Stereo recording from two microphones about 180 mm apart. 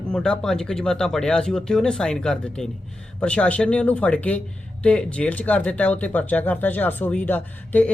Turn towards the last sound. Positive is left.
turn(degrees=10)  # may be behind; listen again after turning